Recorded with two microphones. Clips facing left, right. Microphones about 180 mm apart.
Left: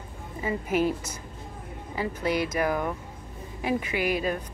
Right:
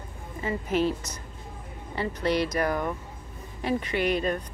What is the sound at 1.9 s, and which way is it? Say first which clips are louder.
Speech: right 1 dB; 5° left (ahead or behind).